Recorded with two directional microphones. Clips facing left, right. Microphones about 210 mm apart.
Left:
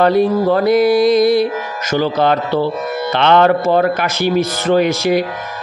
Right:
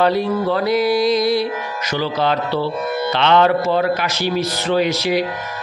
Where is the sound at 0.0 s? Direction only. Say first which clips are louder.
Left 5 dB; 50° left (ahead or behind).